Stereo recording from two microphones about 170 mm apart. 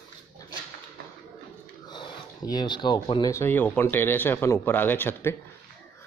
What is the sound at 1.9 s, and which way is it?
Speech, 25° left (ahead or behind).